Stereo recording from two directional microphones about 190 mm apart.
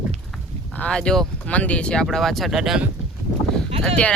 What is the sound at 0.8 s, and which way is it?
Speech, 5° left (ahead or behind).